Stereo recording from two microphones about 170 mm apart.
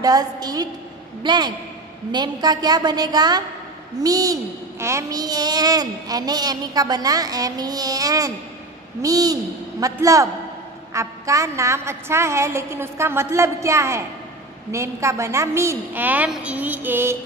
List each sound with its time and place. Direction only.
0.0 s a child's voice: 20° right (ahead or behind)